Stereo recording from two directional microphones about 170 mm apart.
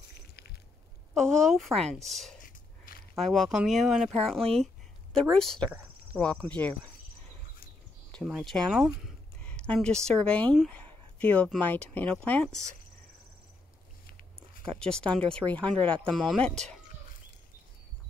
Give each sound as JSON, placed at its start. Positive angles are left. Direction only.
{"t": 0.1, "sound": "a sound", "side_deg": 70}
{"t": 1.1, "sound": "speech", "side_deg": 5}
{"t": 2.4, "sound": "a sound", "side_deg": 55}
{"t": 3.2, "sound": "speech", "side_deg": 0}
{"t": 8.3, "sound": "speech", "side_deg": 0}
{"t": 14.6, "sound": "speech", "side_deg": 5}